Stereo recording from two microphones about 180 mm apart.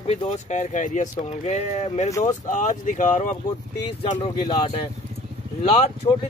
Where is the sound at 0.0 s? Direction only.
35° left (ahead or behind).